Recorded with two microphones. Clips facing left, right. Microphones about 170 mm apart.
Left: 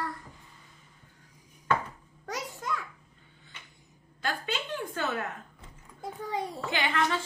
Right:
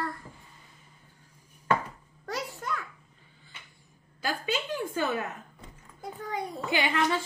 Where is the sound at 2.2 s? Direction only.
15° left (ahead or behind).